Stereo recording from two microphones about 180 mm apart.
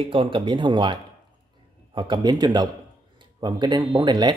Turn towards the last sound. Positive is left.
turn(degrees=-25)  # may be behind; listen again after turning